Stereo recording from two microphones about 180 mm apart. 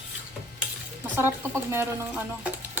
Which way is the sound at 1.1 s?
15° right (ahead or behind).